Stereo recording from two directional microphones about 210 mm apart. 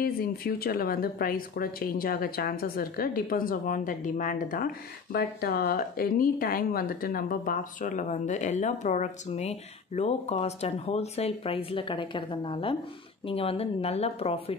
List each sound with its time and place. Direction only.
0.0 s speech: 45° left (ahead or behind); by 14.4 s 30° left (ahead or behind)